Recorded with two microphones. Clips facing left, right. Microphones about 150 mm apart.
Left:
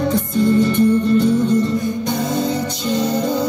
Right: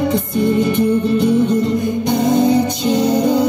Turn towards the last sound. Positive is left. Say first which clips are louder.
# right 4 dB
turn(degrees=-20)  # may be behind; listen again after turning